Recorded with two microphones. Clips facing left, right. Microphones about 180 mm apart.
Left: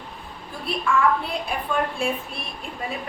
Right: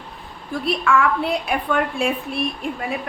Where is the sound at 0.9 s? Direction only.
75° right (ahead or behind).